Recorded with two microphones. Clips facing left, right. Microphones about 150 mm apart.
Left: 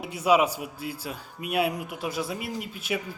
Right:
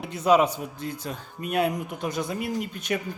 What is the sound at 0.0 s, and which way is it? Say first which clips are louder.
A man's voice: right 2 dB; 10° left (ahead or behind).